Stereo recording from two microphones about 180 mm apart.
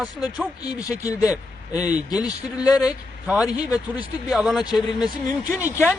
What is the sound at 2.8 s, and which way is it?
Speech, 5° right (ahead or behind).